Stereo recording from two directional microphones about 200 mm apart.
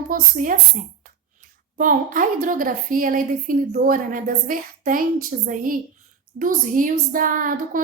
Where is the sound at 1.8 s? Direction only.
40° right (ahead or behind).